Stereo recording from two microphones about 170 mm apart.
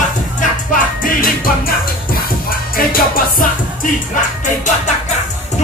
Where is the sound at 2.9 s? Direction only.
55° left (ahead or behind).